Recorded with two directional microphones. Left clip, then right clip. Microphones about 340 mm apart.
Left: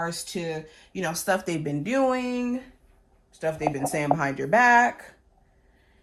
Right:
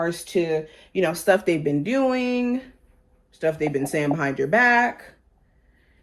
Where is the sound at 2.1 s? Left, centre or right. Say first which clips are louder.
Right 3 dB; centre.